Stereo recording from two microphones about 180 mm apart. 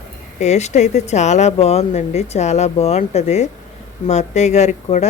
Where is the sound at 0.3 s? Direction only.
40° left (ahead or behind).